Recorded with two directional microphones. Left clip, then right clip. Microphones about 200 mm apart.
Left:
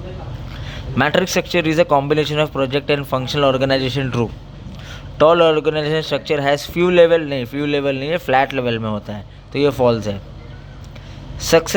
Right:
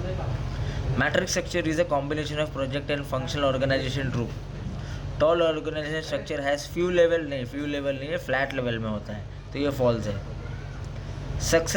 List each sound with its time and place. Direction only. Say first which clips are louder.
0.9 s a man's voice: left 9 dB; 45° left (ahead or behind)